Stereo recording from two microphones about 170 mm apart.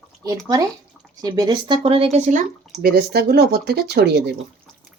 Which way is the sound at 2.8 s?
65° right (ahead or behind).